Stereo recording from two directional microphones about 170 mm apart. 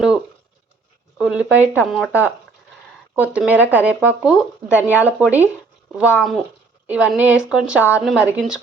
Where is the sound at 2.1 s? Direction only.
10° right (ahead or behind).